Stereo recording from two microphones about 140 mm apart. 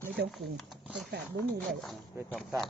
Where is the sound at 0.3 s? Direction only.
Centre (ahead or behind).